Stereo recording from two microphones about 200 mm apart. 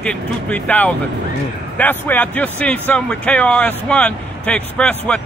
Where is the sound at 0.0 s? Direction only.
5° left (ahead or behind).